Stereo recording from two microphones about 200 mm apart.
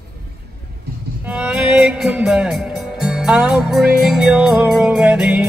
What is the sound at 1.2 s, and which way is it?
Music, 5° right (ahead or behind).